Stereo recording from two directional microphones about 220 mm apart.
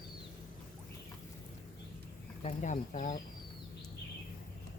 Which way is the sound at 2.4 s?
35° left (ahead or behind).